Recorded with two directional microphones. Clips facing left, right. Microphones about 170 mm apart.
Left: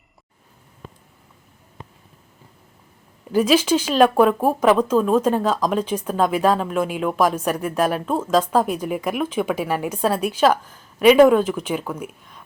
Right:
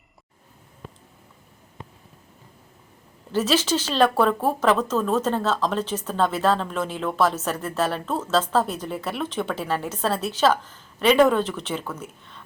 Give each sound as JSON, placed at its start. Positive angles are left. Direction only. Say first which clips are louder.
{"t": 3.3, "sound": "speech", "louder": "left 5 dB", "side_deg": 10}